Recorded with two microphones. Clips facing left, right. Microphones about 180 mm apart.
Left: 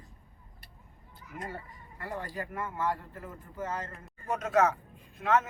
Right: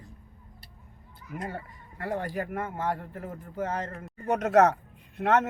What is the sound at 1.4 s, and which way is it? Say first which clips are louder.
A man's voice: right 4 dB; 60° right (ahead or behind).